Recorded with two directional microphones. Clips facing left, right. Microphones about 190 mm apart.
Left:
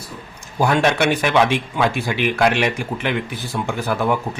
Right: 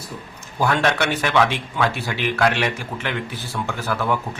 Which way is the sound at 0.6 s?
15° left (ahead or behind).